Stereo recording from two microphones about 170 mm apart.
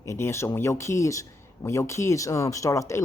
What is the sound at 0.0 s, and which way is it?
Speech, 15° left (ahead or behind).